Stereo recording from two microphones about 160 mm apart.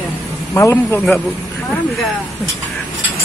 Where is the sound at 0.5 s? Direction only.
20° left (ahead or behind).